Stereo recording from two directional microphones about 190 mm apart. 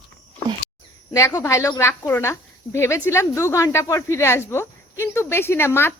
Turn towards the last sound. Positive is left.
turn(degrees=10)  # may be behind; listen again after turning